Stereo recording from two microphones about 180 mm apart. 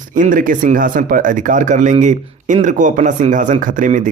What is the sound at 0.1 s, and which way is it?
Speech, 50° right (ahead or behind).